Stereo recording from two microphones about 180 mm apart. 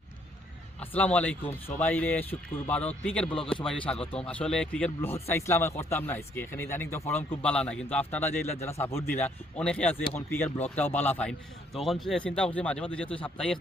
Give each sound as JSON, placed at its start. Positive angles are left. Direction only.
{"t": 0.8, "sound": "a man's voice", "side_deg": 10}